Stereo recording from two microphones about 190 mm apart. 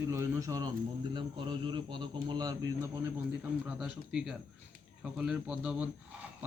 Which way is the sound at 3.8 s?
5° right (ahead or behind).